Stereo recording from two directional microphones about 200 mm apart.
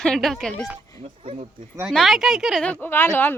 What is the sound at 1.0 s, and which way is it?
Speech, 30° right (ahead or behind).